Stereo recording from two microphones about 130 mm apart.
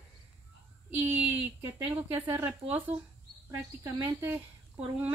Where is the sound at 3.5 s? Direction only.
25° right (ahead or behind).